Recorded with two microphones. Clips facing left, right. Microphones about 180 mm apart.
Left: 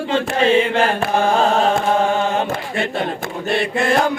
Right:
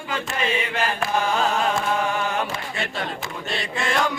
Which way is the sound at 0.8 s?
50° left (ahead or behind).